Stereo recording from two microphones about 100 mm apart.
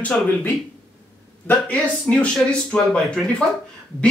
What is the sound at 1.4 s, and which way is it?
Speech, 15° left (ahead or behind).